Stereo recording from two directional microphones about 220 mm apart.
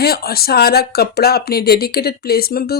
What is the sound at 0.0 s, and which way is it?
Speech, 45° left (ahead or behind).